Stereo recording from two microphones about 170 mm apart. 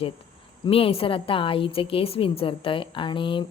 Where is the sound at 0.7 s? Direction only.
35° left (ahead or behind).